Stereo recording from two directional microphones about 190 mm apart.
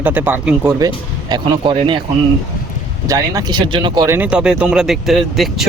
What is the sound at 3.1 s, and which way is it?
Speech, 20° right (ahead or behind).